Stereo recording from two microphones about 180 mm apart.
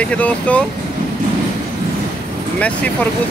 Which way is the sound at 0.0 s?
5° left (ahead or behind).